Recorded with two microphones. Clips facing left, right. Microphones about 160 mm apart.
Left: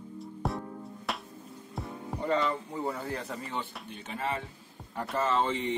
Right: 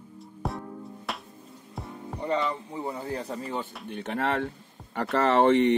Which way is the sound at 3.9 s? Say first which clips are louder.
Right 8 dB; 65° right (ahead or behind).